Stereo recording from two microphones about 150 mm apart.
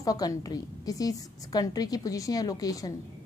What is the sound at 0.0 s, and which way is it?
A woman's voice, 25° left (ahead or behind).